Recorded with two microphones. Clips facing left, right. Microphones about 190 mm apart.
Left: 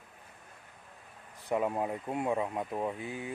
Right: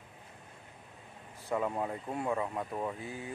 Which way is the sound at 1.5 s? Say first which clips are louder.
Left 2 dB; 20° left (ahead or behind).